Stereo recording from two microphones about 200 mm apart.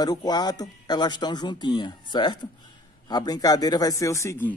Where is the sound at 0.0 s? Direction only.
20° left (ahead or behind).